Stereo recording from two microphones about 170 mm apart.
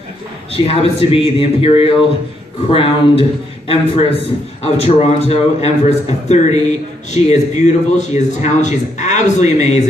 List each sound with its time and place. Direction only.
0.5 s a man's voice: 35° left (ahead or behind)